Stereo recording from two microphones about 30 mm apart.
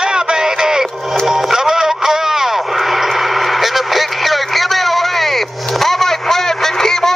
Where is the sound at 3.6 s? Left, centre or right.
Centre.